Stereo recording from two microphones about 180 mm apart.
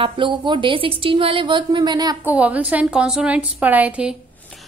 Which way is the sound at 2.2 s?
10° right (ahead or behind).